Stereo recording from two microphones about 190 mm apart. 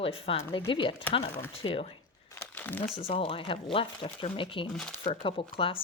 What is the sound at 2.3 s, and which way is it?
Crumpling, 10° left (ahead or behind).